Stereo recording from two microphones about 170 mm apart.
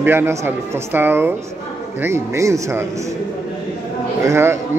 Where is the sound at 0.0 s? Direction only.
15° right (ahead or behind).